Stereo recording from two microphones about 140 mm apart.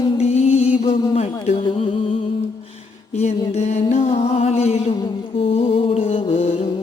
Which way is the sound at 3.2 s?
50° left (ahead or behind).